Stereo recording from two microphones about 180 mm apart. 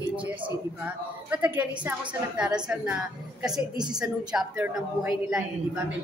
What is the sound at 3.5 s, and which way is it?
Speech, 25° right (ahead or behind).